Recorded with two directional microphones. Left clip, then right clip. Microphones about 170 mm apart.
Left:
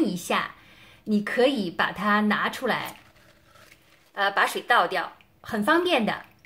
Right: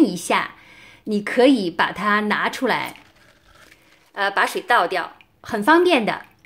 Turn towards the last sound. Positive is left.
turn(degrees=-35)  # may be behind; listen again after turning